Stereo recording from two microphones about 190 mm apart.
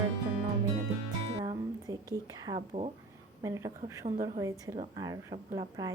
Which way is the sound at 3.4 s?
15° right (ahead or behind).